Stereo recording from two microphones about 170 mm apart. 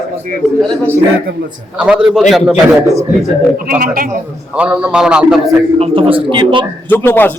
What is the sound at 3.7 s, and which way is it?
Speech, 55° right (ahead or behind).